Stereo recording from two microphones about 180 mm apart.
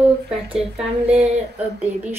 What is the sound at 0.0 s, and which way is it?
Speech, 5° right (ahead or behind).